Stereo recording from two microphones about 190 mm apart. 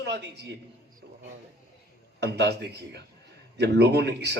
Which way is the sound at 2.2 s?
60° right (ahead or behind).